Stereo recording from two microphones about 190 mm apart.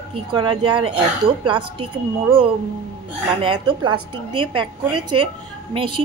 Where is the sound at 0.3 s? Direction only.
25° right (ahead or behind).